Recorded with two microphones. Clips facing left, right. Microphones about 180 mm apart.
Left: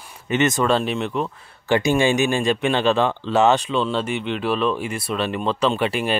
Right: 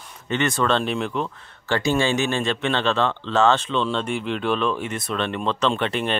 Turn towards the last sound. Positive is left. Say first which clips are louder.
# left 2 dB
turn(degrees=5)  # may be behind; listen again after turning